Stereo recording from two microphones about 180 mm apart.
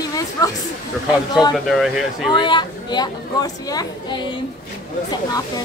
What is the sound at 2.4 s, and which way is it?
Speech, 25° left (ahead or behind).